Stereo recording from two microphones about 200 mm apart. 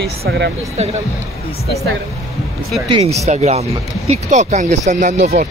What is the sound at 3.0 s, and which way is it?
Speech, 30° right (ahead or behind).